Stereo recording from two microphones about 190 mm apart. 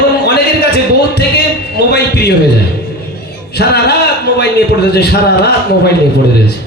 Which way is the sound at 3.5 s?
60° left (ahead or behind).